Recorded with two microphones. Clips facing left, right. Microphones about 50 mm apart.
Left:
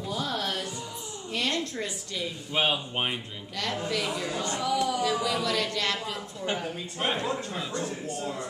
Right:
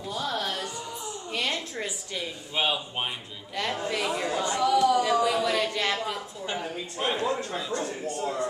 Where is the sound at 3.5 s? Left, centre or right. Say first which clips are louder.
Right 1 dB; right.